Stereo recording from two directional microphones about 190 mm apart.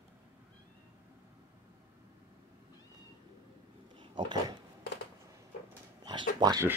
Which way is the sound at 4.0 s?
25° right (ahead or behind).